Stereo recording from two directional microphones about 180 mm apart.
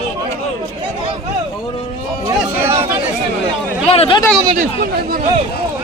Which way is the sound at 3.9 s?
35° left (ahead or behind).